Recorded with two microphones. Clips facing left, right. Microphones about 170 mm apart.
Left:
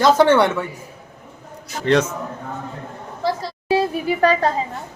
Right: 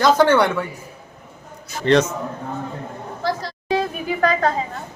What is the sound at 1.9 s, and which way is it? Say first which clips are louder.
Speech: right 1 dB; 10° left (ahead or behind).